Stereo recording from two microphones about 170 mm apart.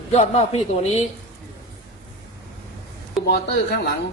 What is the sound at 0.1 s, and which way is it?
Speech, 40° left (ahead or behind).